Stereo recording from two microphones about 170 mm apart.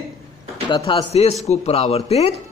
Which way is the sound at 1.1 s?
40° left (ahead or behind).